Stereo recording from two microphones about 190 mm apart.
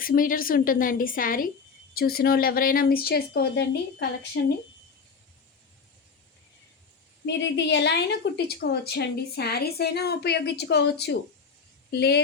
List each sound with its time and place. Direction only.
0.0 s speech: 50° left (ahead or behind)
7.3 s a woman's voice: 65° left (ahead or behind)